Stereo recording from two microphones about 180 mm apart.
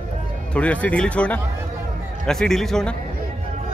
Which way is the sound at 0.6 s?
5° left (ahead or behind).